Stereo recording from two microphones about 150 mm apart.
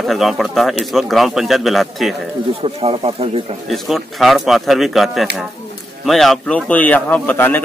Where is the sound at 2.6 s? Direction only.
40° right (ahead or behind).